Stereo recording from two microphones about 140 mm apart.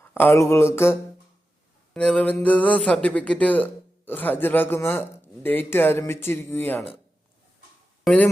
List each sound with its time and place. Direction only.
0.0 s mantra: 15° left (ahead or behind)
1.9 s speech: 5° left (ahead or behind)
8.0 s speech: 10° left (ahead or behind)